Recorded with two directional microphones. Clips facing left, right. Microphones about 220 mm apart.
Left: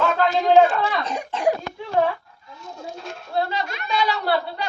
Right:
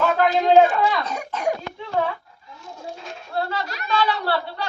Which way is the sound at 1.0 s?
30° left (ahead or behind).